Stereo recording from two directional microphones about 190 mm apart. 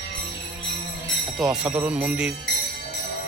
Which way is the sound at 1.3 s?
5° right (ahead or behind).